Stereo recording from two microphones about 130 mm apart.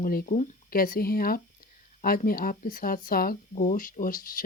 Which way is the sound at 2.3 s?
90° left.